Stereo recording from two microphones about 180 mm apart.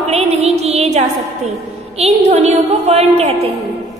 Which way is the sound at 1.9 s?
35° right (ahead or behind).